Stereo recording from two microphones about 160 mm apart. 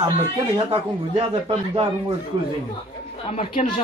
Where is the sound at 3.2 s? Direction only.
40° left (ahead or behind).